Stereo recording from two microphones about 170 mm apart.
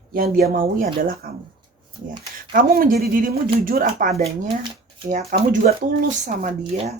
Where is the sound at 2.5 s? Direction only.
55° right (ahead or behind).